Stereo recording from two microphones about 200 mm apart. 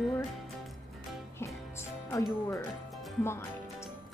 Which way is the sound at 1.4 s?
15° left (ahead or behind).